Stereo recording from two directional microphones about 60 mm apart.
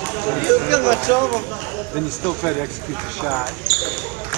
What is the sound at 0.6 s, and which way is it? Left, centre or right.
Speech, right.